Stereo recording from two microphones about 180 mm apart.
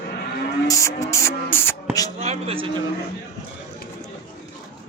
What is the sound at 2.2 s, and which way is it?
Speech, 35° right (ahead or behind).